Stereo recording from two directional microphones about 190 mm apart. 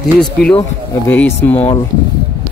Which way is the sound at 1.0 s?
10° left (ahead or behind).